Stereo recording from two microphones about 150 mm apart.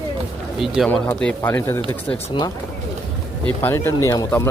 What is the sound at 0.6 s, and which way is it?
Speech, centre (ahead or behind).